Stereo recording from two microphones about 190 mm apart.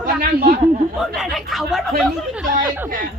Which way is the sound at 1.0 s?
Centre (ahead or behind).